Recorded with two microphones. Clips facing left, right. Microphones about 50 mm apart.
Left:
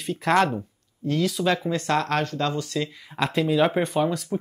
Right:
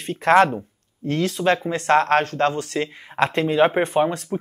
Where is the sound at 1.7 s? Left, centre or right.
Right.